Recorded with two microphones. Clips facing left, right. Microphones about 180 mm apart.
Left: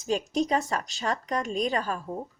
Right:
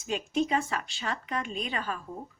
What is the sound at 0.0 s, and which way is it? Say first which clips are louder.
A woman's voice: left 2 dB; 40° left (ahead or behind).